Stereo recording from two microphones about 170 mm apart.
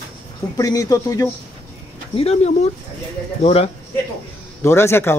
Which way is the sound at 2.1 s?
35° left (ahead or behind).